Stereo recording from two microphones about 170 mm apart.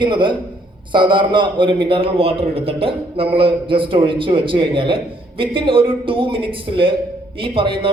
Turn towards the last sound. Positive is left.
turn(degrees=-30)  # may be behind; listen again after turning